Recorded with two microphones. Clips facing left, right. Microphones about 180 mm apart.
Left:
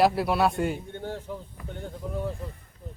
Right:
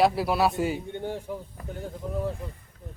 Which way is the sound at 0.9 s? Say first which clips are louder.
Right 2 dB; 15° right (ahead or behind).